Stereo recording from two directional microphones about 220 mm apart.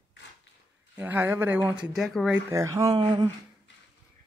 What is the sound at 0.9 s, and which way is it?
Speech, 10° right (ahead or behind).